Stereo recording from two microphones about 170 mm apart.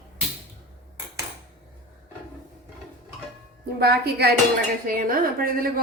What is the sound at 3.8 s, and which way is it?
Speech, 65° right (ahead or behind).